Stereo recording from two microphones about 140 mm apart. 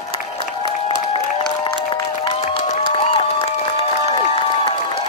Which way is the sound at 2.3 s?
45° left (ahead or behind).